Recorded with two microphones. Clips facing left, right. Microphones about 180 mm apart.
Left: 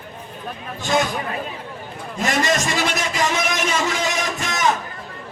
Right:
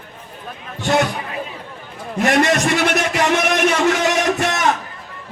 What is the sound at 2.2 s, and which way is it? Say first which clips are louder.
A man's voice: right 5 dB; 65° right (ahead or behind).